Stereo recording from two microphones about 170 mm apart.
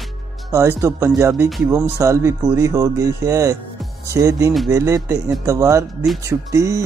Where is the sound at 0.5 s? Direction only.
15° right (ahead or behind).